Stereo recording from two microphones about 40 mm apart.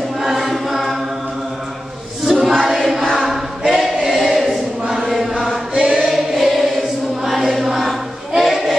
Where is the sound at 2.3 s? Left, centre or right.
Centre.